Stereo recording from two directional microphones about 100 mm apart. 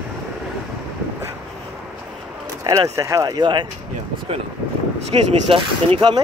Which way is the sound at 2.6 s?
35° right (ahead or behind).